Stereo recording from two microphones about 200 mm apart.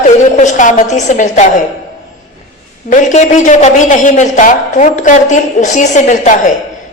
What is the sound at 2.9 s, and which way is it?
A man's voice, 40° left (ahead or behind).